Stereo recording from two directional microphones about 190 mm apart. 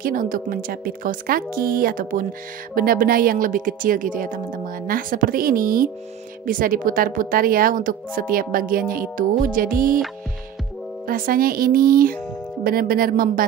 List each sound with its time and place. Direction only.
0.0 s speech: 45° right (ahead or behind)
11.1 s speech: 50° right (ahead or behind)